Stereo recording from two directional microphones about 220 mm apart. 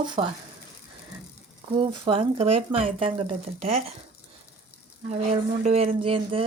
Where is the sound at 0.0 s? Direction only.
20° right (ahead or behind).